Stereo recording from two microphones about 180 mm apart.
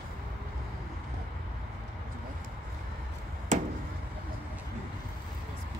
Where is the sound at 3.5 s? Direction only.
40° right (ahead or behind).